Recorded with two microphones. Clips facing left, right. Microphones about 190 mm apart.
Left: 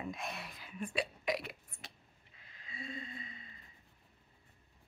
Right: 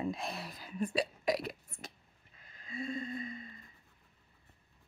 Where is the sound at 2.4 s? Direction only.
45° right (ahead or behind).